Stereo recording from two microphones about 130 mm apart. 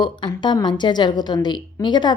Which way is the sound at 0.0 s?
35° left (ahead or behind).